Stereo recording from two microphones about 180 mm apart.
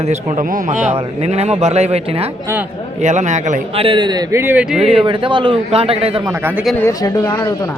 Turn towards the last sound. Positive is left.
turn(degrees=20)  # may be behind; listen again after turning